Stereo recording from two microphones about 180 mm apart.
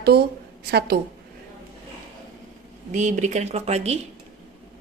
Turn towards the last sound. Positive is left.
turn(degrees=-35)  # may be behind; listen again after turning